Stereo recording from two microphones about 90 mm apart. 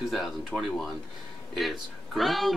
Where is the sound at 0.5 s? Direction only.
5° right (ahead or behind).